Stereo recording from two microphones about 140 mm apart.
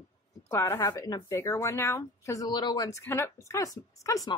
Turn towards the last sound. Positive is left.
turn(degrees=25)  # may be behind; listen again after turning